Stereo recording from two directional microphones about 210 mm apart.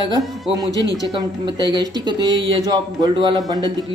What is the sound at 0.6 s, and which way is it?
Speech, 15° left (ahead or behind).